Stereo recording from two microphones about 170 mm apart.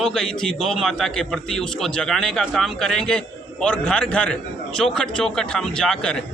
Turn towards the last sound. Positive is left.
turn(degrees=5)  # may be behind; listen again after turning